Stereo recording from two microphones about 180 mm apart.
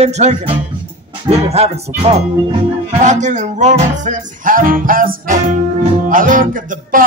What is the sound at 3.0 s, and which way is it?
Music, 40° right (ahead or behind).